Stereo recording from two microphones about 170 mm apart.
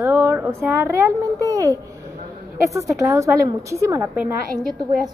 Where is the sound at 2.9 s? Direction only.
15° right (ahead or behind).